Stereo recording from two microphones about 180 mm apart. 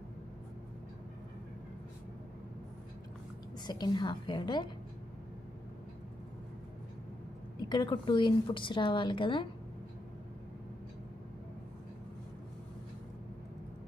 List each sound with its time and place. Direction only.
3.6 s a woman's voice: 25° left (ahead or behind)
7.6 s a woman's voice: 25° left (ahead or behind)